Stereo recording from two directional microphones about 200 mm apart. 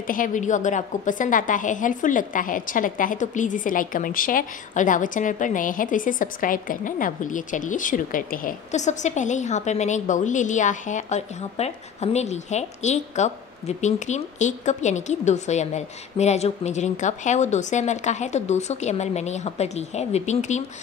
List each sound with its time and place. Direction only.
0.0 s a woman's voice: 45° left (ahead or behind)